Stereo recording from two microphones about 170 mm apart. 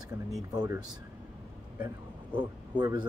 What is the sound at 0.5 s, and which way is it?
Speech, 25° right (ahead or behind).